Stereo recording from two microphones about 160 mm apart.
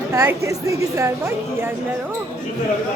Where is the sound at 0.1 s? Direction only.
15° right (ahead or behind).